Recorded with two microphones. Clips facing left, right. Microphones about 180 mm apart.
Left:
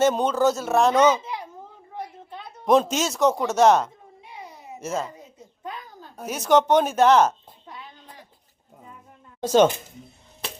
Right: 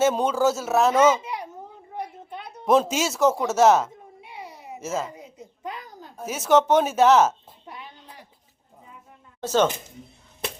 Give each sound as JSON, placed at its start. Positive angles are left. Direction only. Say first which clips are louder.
{"t": 0.0, "sound": "speech", "louder": "left 1 dB", "side_deg": -5}
{"t": 2.0, "sound": "a sound", "louder": "right 2 dB", "side_deg": -15}
{"t": 2.6, "sound": "speech", "louder": "left 1 dB", "side_deg": -5}
{"t": 4.4, "sound": "babbling", "louder": "right 1 dB", "side_deg": -5}
{"t": 5.1, "sound": "a sound", "louder": "right 3 dB", "side_deg": -15}
{"t": 6.2, "sound": "a woman's voice", "louder": "even", "side_deg": -5}
{"t": 9.4, "sound": "speech", "louder": "left 4 dB", "side_deg": 15}